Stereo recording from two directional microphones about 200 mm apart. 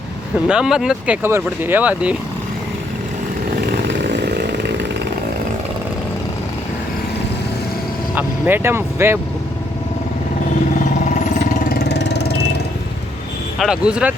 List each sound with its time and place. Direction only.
0.4 s speech: 5° right (ahead or behind)
3.7 s chainsaw: 60° right (ahead or behind)
8.1 s speech: 10° right (ahead or behind)
11.7 s vehicle: 55° left (ahead or behind)
13.6 s speech: 5° right (ahead or behind)